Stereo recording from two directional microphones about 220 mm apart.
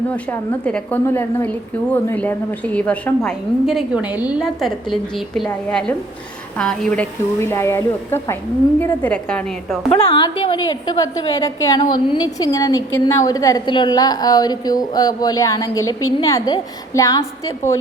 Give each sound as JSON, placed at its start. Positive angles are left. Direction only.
{"t": 0.1, "sound": "a woman's voice", "side_deg": 5}
{"t": 9.9, "sound": "a woman's voice", "side_deg": 25}